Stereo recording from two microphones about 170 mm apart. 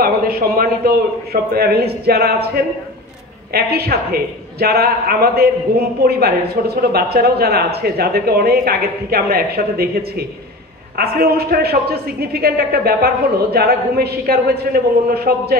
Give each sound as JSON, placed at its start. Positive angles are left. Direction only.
{"t": 0.0, "sound": "a woman's voice", "side_deg": -60}